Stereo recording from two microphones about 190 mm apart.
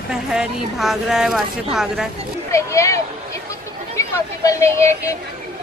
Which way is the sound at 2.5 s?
15° left (ahead or behind).